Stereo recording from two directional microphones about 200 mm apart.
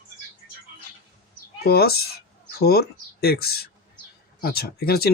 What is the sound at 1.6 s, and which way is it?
A woman's voice, 50° left (ahead or behind).